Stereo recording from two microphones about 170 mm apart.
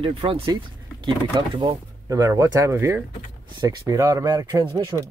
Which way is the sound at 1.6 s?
25° right (ahead or behind).